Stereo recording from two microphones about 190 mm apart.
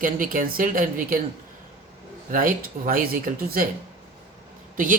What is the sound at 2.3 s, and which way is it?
Speech, 50° right (ahead or behind).